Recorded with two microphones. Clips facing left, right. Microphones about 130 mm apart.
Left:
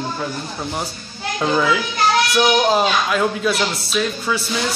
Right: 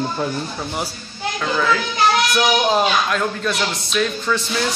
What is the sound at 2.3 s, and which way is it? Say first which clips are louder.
Speech: left 1 dB; centre (ahead or behind).